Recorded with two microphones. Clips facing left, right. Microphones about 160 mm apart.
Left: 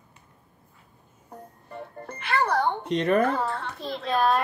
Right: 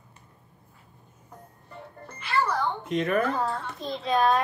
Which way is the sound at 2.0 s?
55° left (ahead or behind).